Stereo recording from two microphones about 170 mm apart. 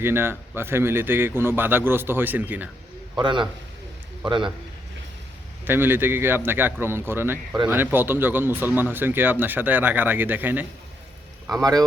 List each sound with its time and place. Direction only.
0.0 s speech: 15° right (ahead or behind)
3.2 s speech: 25° right (ahead or behind)
5.6 s speech: 10° right (ahead or behind)
11.6 s speech: 20° right (ahead or behind)